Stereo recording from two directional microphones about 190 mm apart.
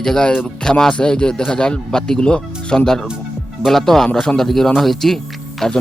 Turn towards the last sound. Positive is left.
turn(degrees=0)  # may be behind; listen again after turning